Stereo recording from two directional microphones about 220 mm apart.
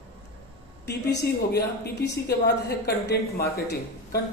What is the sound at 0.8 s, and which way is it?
A woman's voice, 50° left (ahead or behind).